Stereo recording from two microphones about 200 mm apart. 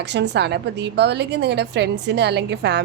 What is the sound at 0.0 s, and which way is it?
A woman's voice, 60° right (ahead or behind).